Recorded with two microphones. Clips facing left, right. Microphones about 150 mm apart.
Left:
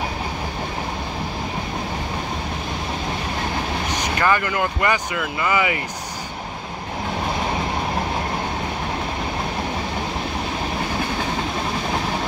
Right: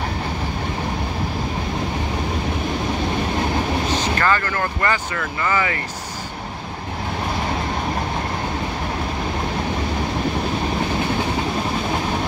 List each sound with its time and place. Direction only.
3.9 s speech: 15° left (ahead or behind)